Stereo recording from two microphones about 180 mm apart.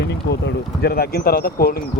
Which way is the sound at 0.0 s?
70° left (ahead or behind).